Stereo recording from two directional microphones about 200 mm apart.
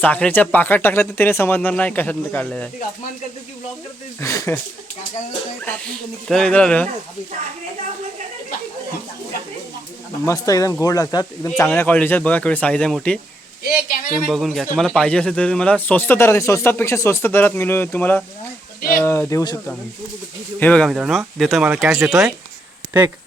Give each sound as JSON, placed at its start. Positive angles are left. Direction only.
{"t": 0.0, "sound": "speech", "side_deg": 10}
{"t": 4.2, "sound": "speech", "side_deg": 15}
{"t": 5.6, "sound": "speech", "side_deg": 5}
{"t": 10.2, "sound": "speech", "side_deg": 15}
{"t": 13.7, "sound": "speech", "side_deg": 45}
{"t": 14.2, "sound": "speech", "side_deg": 0}